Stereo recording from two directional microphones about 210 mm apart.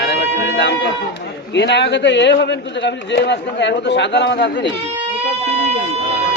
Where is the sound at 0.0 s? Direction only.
55° left (ahead or behind).